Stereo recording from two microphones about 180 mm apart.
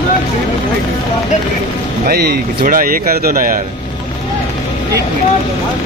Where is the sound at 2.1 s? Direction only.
60° right (ahead or behind).